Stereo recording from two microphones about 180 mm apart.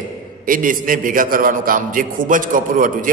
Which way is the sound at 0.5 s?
50° right (ahead or behind).